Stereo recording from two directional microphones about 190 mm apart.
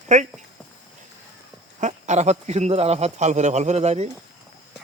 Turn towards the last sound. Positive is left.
turn(degrees=-35)  # may be behind; listen again after turning